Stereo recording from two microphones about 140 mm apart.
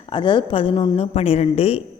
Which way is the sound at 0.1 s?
35° left (ahead or behind).